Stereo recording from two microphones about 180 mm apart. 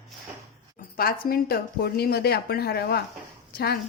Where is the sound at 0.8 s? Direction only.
55° left (ahead or behind).